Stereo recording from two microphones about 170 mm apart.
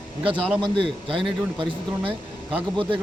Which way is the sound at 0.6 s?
30° right (ahead or behind).